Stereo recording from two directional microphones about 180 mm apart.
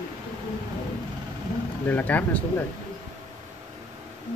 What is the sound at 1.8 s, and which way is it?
Speech, 10° left (ahead or behind).